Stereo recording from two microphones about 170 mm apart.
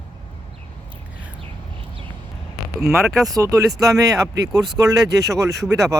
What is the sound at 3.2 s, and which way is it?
Speech, 20° right (ahead or behind).